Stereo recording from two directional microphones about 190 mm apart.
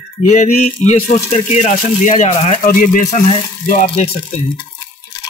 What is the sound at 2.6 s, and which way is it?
Speech, 45° left (ahead or behind).